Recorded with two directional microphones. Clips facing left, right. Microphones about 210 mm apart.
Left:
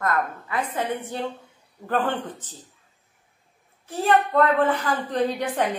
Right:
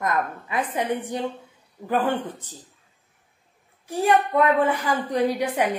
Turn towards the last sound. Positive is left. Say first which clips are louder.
# right 1 dB
turn(degrees=-10)  # may be behind; listen again after turning